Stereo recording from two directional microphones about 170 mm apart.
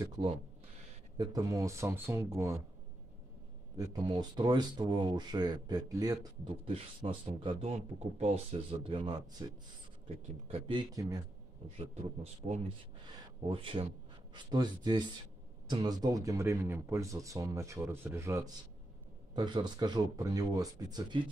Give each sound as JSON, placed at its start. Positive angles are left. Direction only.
{"t": 0.0, "sound": "speech", "side_deg": -25}
{"t": 3.7, "sound": "speech", "side_deg": -20}
{"t": 11.9, "sound": "speech", "side_deg": -40}